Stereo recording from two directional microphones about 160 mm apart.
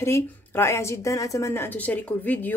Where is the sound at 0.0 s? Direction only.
15° left (ahead or behind).